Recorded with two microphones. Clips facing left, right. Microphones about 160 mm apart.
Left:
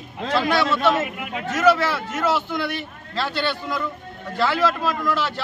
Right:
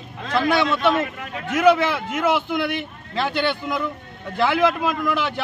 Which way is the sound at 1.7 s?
15° right (ahead or behind).